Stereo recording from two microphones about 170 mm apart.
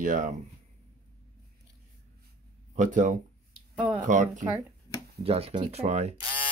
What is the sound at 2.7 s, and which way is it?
Speech, 45° right (ahead or behind).